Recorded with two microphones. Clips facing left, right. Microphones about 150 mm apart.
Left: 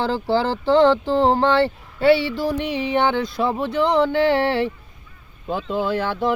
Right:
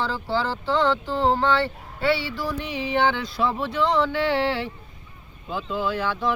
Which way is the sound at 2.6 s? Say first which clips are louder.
Even; 50° left (ahead or behind).